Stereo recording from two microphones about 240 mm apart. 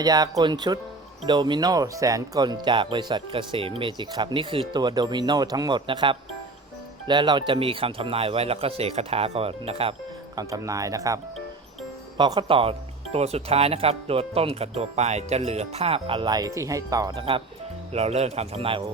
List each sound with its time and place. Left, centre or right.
0.0 s speech: centre